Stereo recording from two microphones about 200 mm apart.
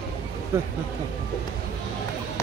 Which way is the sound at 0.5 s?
10° right (ahead or behind).